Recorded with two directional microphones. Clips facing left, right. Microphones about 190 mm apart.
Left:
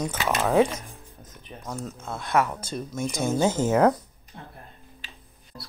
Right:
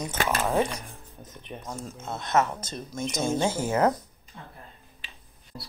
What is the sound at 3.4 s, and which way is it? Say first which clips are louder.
Speech: left 5 dB; 20° left (ahead or behind).